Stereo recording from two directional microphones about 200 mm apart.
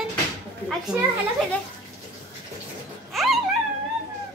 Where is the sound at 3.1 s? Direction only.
Centre (ahead or behind).